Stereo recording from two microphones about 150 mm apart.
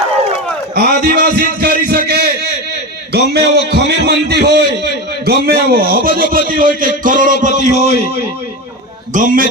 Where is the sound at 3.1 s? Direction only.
90° right.